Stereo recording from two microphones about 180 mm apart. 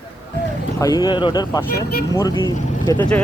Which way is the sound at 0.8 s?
20° left (ahead or behind).